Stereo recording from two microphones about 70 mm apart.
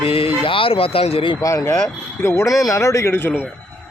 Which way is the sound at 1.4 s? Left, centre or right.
Left.